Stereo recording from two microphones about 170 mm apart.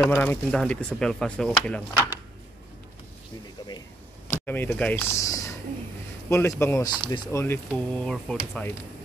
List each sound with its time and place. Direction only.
0.1 s speech: 10° left (ahead or behind)
4.5 s speech: 10° left (ahead or behind)